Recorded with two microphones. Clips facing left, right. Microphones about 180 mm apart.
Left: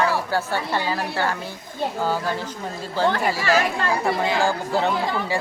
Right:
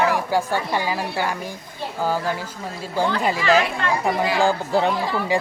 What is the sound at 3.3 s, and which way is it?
A woman's voice, 20° right (ahead or behind).